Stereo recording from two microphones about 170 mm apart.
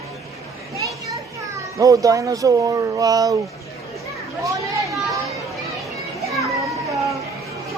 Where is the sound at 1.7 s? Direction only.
20° right (ahead or behind).